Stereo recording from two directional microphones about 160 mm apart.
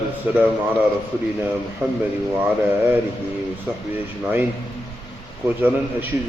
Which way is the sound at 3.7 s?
10° right (ahead or behind).